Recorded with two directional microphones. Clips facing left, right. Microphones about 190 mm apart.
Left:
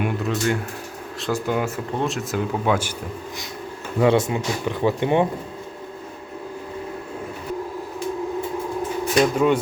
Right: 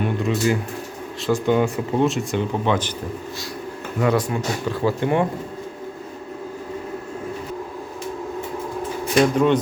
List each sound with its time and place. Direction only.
0.0 s speech: centre (ahead or behind)
4.0 s speech: 25° left (ahead or behind)
9.2 s speech: 5° left (ahead or behind)